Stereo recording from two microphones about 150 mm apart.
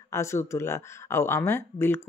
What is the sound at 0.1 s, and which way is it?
Speech, 20° left (ahead or behind).